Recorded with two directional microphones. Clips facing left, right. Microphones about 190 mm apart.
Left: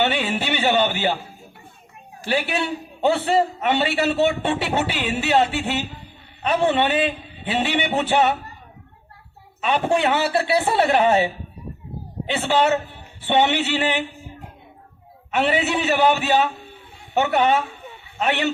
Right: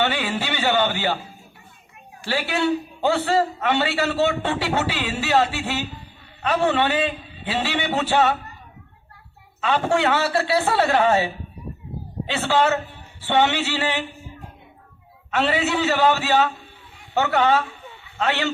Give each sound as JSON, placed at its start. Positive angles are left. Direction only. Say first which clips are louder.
{"t": 0.0, "sound": "a man's voice", "louder": "left 2 dB", "side_deg": 20}
{"t": 2.2, "sound": "a man's voice", "louder": "right 1 dB", "side_deg": 20}
{"t": 9.6, "sound": "a man's voice", "louder": "even", "side_deg": 20}
{"t": 15.3, "sound": "a man's voice", "louder": "left 1 dB", "side_deg": 20}